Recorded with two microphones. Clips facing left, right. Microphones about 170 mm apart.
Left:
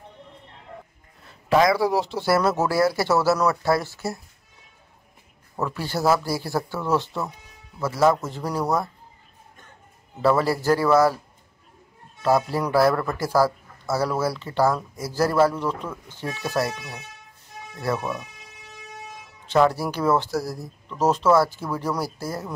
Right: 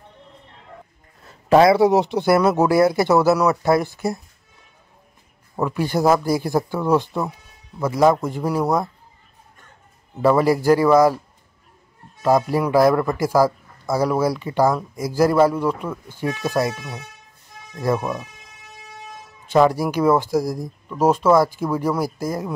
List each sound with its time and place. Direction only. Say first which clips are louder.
1.2 s a sound: right 5 dB; 40° right (ahead or behind)
1.7 s a man's voice: right 6 dB; 20° right (ahead or behind)
5.6 s a man's voice: right 6 dB; 15° right (ahead or behind)
10.2 s a man's voice: right 4 dB; 15° right (ahead or behind)
12.2 s a man's voice: right 3 dB; 15° right (ahead or behind)
17.7 s a man's voice: right 5 dB; 15° right (ahead or behind)
19.4 s a man's voice: right 3 dB; 10° right (ahead or behind)